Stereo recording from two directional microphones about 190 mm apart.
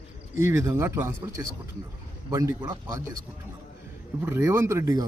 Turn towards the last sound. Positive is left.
turn(degrees=-15)  # may be behind; listen again after turning